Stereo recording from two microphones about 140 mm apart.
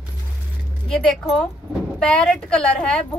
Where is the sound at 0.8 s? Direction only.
5° left (ahead or behind).